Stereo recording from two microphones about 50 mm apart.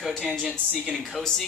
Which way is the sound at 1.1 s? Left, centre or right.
Centre.